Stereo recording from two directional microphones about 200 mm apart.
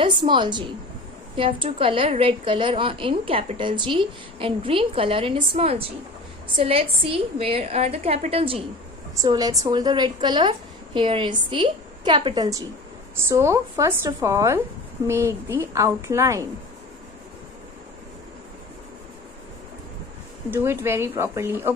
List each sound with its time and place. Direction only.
0.0 s a woman's voice: 25° right (ahead or behind)
9.1 s a woman's voice: 15° right (ahead or behind)
20.5 s speech: 10° right (ahead or behind)